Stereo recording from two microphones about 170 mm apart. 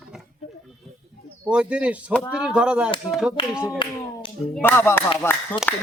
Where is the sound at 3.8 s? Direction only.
30° left (ahead or behind).